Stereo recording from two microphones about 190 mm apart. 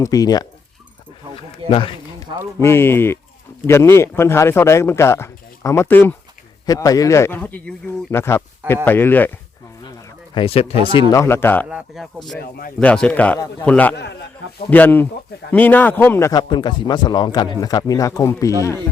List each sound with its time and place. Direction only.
0.0 s a man's voice: 20° left (ahead or behind)
2.6 s speech: 15° left (ahead or behind)
10.3 s speech: 30° left (ahead or behind)
11.1 s speech: 15° left (ahead or behind)
11.9 s speech: centre (ahead or behind)
12.4 s speech: 55° left (ahead or behind)
12.8 s speech: 5° left (ahead or behind)
13.9 s speech: 65° left (ahead or behind)
14.7 s a man's voice: 10° left (ahead or behind)